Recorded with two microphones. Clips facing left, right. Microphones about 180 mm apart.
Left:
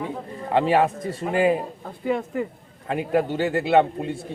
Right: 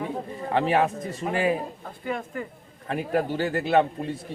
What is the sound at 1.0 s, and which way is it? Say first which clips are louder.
A man's voice: left 4 dB; 25° left (ahead or behind).